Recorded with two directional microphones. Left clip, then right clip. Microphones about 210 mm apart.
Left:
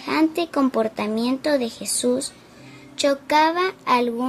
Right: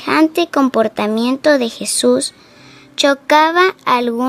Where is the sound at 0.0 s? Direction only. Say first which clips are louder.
Right 7 dB; 55° right (ahead or behind).